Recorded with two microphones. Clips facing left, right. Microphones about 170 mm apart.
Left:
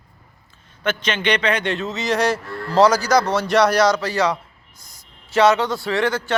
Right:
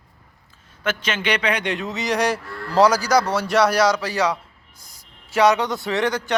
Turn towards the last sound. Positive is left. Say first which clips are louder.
# left 1 dB
turn(degrees=-15)  # may be behind; listen again after turning